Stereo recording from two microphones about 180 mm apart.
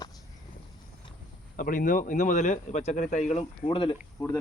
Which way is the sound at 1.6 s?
50° left (ahead or behind).